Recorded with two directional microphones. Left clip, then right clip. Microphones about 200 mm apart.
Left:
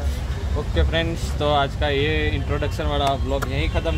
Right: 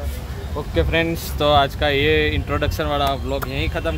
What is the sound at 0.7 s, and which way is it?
Speech, 55° right (ahead or behind).